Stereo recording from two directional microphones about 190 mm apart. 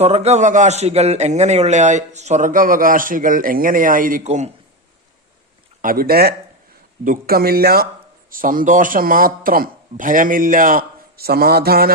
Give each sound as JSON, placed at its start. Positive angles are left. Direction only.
{"t": 0.0, "sound": "a man's voice", "side_deg": -35}
{"t": 5.8, "sound": "speech", "side_deg": -50}